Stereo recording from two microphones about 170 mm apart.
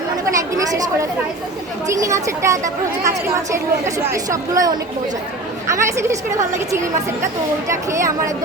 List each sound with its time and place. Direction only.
0.3 s a woman's voice: 20° right (ahead or behind)
1.9 s a woman's voice: 20° right (ahead or behind)
7.7 s a woman's voice: 15° right (ahead or behind)